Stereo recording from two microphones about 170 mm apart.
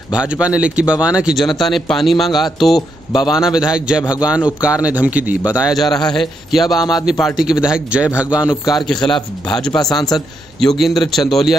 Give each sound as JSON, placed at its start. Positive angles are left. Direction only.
{"t": 0.1, "sound": "speech", "side_deg": -5}
{"t": 5.9, "sound": "a man's voice", "side_deg": 25}
{"t": 6.1, "sound": "speech", "side_deg": 0}
{"t": 9.7, "sound": "a man's voice", "side_deg": 20}
{"t": 10.6, "sound": "speech", "side_deg": 5}